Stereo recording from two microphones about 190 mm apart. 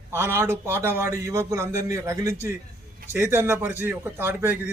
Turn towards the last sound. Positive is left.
turn(degrees=-10)  # may be behind; listen again after turning